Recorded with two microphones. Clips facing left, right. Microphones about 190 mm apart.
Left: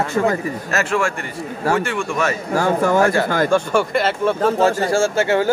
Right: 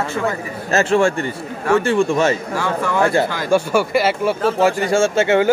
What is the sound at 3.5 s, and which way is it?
Speech, 5° right (ahead or behind).